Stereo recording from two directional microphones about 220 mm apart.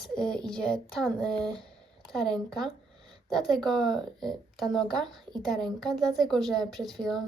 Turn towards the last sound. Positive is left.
turn(degrees=0)  # may be behind; listen again after turning